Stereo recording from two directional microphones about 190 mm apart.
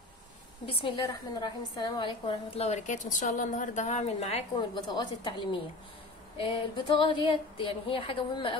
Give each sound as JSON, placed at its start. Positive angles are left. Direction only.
{"t": 0.7, "sound": "a woman's voice", "side_deg": 25}
{"t": 4.6, "sound": "a woman's voice", "side_deg": 25}
{"t": 7.0, "sound": "a woman's voice", "side_deg": 25}